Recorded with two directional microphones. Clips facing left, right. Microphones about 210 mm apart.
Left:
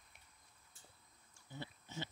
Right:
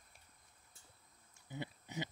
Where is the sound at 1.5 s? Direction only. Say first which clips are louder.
Right 4 dB; 15° right (ahead or behind).